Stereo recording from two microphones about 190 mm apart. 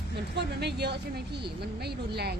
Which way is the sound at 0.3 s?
60° right (ahead or behind).